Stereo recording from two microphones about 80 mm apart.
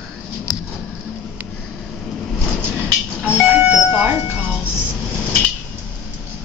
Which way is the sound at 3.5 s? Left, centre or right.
Centre.